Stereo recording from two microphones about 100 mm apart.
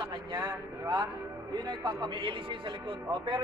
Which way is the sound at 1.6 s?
50° right (ahead or behind).